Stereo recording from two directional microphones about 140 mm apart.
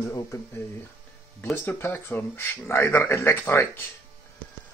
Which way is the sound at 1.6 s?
15° left (ahead or behind).